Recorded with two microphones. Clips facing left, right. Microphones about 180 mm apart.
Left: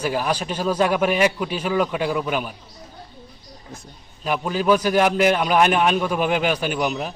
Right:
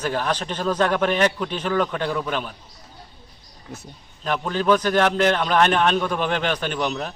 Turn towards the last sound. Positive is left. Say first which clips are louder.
# left 2 dB
turn(degrees=10)  # may be behind; listen again after turning